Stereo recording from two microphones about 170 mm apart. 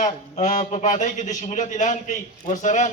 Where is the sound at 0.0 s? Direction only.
45° left (ahead or behind).